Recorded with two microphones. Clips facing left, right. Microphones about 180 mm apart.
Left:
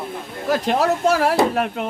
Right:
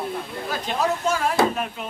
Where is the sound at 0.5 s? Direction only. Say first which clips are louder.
Left 6 dB; 70° left (ahead or behind).